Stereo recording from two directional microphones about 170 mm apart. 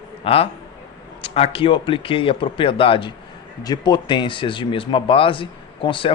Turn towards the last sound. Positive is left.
turn(degrees=30)  # may be behind; listen again after turning